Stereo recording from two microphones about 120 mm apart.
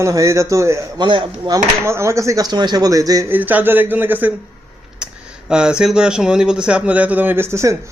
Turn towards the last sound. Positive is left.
turn(degrees=-25)  # may be behind; listen again after turning